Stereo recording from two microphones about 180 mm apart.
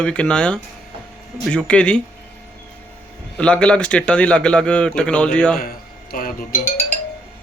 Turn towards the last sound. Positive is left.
turn(degrees=45)  # may be behind; listen again after turning